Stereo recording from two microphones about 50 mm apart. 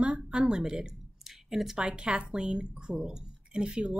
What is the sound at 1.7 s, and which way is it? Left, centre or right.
A woman's voice, centre.